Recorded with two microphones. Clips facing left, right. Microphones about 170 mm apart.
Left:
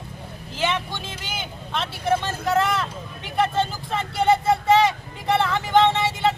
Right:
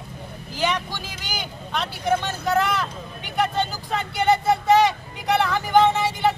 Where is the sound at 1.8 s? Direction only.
5° left (ahead or behind).